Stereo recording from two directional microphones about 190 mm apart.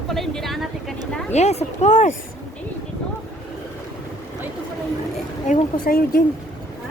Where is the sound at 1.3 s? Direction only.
35° left (ahead or behind).